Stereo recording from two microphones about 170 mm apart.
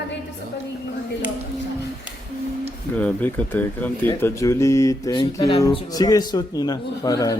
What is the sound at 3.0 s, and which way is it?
Speech, 10° left (ahead or behind).